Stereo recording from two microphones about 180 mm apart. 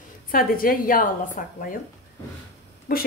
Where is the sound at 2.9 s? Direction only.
55° left (ahead or behind).